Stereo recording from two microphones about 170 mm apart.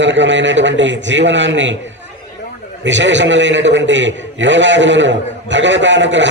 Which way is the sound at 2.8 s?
90° right.